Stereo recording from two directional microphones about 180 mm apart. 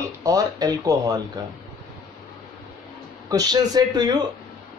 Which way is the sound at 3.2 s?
20° right (ahead or behind).